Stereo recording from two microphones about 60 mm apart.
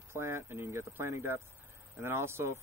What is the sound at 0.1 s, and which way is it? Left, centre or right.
Speech, right.